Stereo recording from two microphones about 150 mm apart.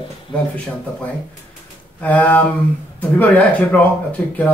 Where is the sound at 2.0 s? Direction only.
10° left (ahead or behind).